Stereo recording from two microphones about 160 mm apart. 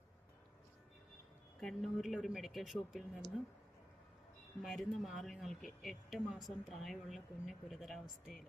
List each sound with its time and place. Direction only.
1.5 s speech: centre (ahead or behind)
4.6 s speech: centre (ahead or behind)